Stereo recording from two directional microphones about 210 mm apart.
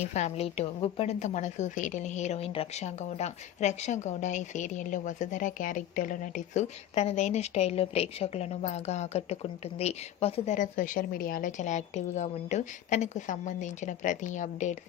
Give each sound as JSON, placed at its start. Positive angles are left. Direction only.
{"t": 0.0, "sound": "a woman's voice", "side_deg": 30}